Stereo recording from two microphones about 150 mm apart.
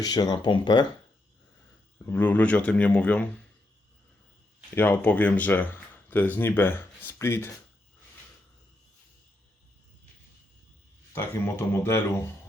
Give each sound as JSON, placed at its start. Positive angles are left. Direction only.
{"t": 0.0, "sound": "speech", "side_deg": 25}
{"t": 2.0, "sound": "speech", "side_deg": 15}
{"t": 4.7, "sound": "speech", "side_deg": 10}
{"t": 11.1, "sound": "speech", "side_deg": 15}